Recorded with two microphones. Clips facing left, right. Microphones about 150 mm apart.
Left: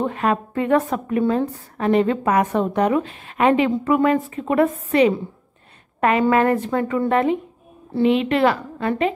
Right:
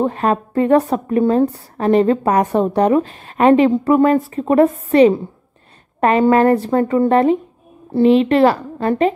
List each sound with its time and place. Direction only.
0.0 s a woman's voice: 35° right (ahead or behind)